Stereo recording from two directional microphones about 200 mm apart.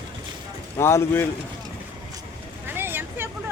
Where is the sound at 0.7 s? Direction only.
10° left (ahead or behind).